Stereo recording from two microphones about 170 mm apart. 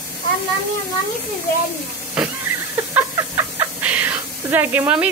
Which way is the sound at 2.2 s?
5° right (ahead or behind).